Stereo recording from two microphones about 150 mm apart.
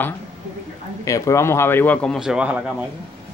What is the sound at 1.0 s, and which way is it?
Speech, 20° left (ahead or behind).